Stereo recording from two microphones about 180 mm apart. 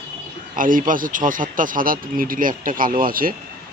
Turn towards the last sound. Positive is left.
turn(degrees=-50)  # may be behind; listen again after turning